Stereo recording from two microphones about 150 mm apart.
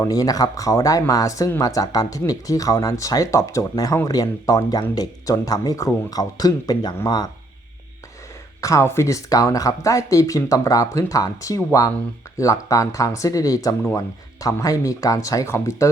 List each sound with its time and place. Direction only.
0.0 s speech: 25° left (ahead or behind)
8.6 s speech: 20° left (ahead or behind)